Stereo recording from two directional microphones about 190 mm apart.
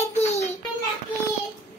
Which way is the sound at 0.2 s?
35° left (ahead or behind).